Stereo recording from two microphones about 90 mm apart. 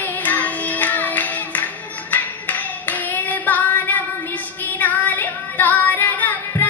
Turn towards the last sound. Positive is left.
turn(degrees=20)  # may be behind; listen again after turning